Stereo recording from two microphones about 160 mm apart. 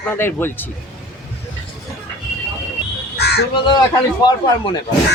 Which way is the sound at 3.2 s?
90° left.